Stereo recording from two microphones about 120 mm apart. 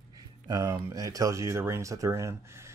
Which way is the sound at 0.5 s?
30° right (ahead or behind).